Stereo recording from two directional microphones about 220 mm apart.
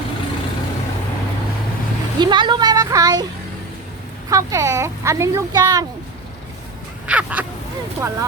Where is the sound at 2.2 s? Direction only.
20° right (ahead or behind).